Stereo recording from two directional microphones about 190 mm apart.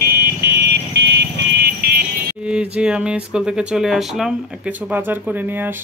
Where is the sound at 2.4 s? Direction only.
5° right (ahead or behind).